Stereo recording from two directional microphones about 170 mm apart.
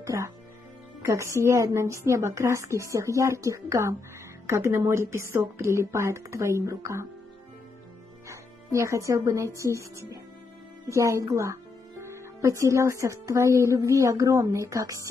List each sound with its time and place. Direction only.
0.0 s speech: 15° right (ahead or behind)
8.3 s speech: 15° right (ahead or behind)